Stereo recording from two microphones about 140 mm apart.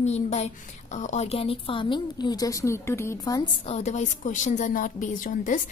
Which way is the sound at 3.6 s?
50° left (ahead or behind).